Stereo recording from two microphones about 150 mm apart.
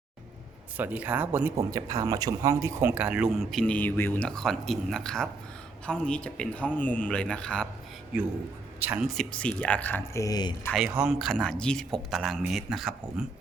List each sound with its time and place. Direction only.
0.8 s speech: 10° right (ahead or behind)
1.7 s speech: 25° right (ahead or behind)
2.9 s a man's voice: 10° right (ahead or behind)
8.8 s speech: 10° right (ahead or behind)
9.1 s a man's voice: 10° left (ahead or behind)
10.2 s speech: 25° left (ahead or behind)
10.8 s speech: 5° right (ahead or behind)